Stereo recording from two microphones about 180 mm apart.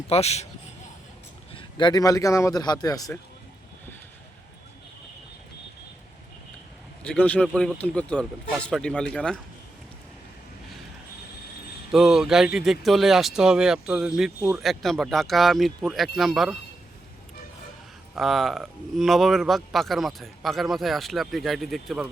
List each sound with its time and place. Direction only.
0.1 s speech: 35° left (ahead or behind)
1.5 s a man's voice: 25° left (ahead or behind)
7.0 s speech: 5° left (ahead or behind)
11.9 s speech: centre (ahead or behind)
18.1 s speech: centre (ahead or behind)